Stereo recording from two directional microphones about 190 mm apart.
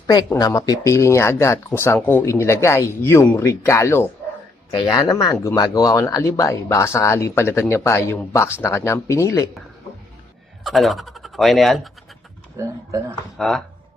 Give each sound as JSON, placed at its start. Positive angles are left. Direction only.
{"t": 0.1, "sound": "speech", "side_deg": 20}
{"t": 10.6, "sound": "speech", "side_deg": 0}
{"t": 12.5, "sound": "speech", "side_deg": -15}
{"t": 13.4, "sound": "speech", "side_deg": 0}